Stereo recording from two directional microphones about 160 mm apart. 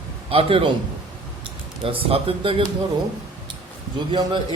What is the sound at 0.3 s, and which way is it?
Speech, 35° right (ahead or behind).